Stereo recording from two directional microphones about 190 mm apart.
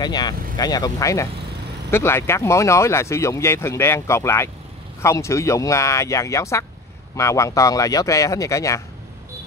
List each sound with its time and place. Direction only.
0.0 s speech: 20° left (ahead or behind)